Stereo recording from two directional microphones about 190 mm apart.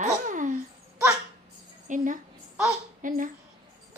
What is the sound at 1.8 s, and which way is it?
A child's voice, 45° right (ahead or behind).